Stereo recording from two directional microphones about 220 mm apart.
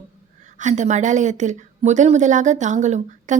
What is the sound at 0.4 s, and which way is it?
A woman's voice, 35° right (ahead or behind).